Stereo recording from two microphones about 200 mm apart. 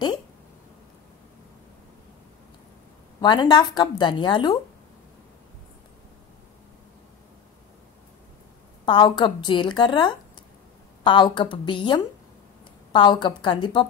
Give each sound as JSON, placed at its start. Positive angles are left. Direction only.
{"t": 3.2, "sound": "a woman's voice", "side_deg": 20}
{"t": 8.8, "sound": "a woman's voice", "side_deg": 25}